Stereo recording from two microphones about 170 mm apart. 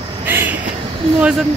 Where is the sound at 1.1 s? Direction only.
5° right (ahead or behind).